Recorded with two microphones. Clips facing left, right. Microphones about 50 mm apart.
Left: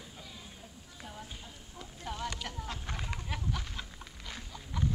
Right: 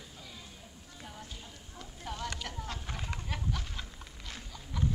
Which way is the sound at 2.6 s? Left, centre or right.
Centre.